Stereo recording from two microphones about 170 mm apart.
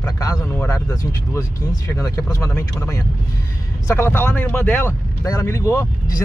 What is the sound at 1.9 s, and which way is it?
Speech, 20° left (ahead or behind).